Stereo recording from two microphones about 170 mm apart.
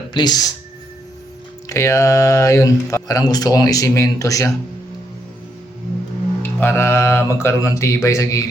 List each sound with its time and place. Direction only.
0.1 s speech: 25° left (ahead or behind)
1.7 s speech: 20° left (ahead or behind)
6.4 s speech: 15° left (ahead or behind)